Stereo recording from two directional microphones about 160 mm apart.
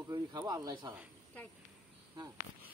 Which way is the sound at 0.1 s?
25° right (ahead or behind).